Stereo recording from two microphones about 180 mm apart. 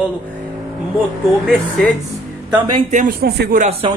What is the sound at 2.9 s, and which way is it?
Speech, 50° right (ahead or behind).